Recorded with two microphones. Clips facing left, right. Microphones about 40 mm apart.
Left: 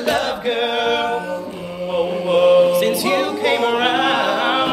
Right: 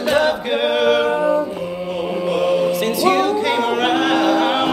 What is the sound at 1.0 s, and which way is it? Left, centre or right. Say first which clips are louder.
A capella: right 5 dB; right.